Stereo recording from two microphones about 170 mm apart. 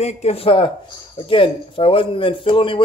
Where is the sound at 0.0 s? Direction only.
40° left (ahead or behind).